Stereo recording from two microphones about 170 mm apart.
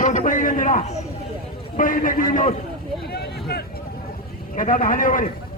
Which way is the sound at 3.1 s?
70° left (ahead or behind).